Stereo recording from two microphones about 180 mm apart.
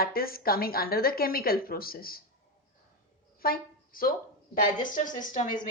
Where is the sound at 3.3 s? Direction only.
55° left (ahead or behind).